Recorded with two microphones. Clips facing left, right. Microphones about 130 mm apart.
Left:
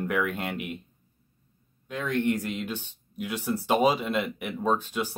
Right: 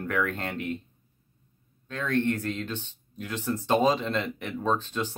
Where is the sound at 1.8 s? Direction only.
15° left (ahead or behind).